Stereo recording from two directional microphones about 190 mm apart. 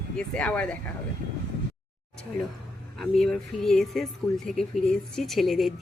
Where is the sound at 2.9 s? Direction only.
5° left (ahead or behind).